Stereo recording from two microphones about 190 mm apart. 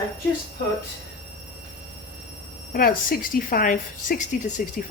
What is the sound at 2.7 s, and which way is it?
A woman's voice, 50° left (ahead or behind).